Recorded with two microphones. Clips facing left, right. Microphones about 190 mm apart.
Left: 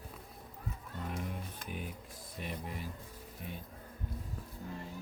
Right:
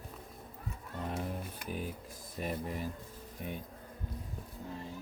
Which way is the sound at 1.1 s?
30° right (ahead or behind).